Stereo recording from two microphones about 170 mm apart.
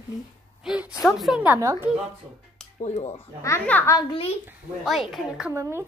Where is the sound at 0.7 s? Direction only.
Centre (ahead or behind).